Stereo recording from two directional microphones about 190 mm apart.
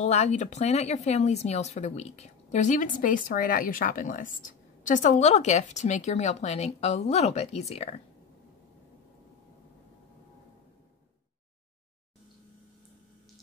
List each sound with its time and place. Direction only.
0.0 s speech: 35° left (ahead or behind)